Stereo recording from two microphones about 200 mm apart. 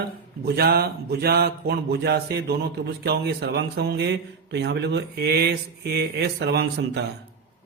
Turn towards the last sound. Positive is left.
turn(degrees=-55)  # may be behind; listen again after turning